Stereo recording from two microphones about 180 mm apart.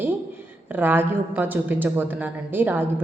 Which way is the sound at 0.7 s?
10° right (ahead or behind).